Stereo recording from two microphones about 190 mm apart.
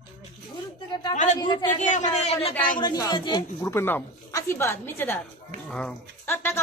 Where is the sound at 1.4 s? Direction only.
25° left (ahead or behind).